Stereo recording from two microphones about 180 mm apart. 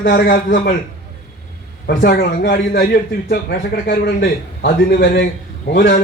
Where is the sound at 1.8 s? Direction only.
60° left (ahead or behind).